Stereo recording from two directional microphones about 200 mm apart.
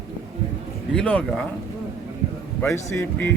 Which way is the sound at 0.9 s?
5° left (ahead or behind).